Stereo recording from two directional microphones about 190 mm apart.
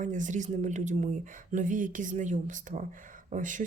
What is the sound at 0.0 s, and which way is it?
Speech, 40° right (ahead or behind).